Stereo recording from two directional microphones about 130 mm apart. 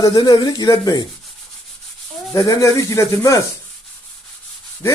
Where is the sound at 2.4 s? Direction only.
25° left (ahead or behind).